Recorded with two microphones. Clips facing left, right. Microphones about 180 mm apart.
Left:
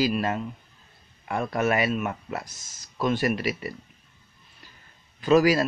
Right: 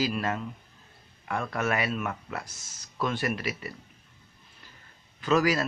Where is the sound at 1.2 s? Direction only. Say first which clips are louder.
Left 4 dB; 20° left (ahead or behind).